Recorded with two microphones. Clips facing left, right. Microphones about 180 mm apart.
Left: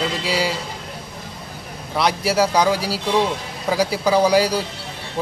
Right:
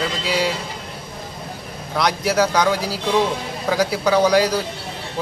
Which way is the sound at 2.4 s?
30° left (ahead or behind).